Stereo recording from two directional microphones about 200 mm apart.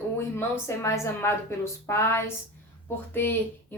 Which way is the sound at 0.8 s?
15° left (ahead or behind).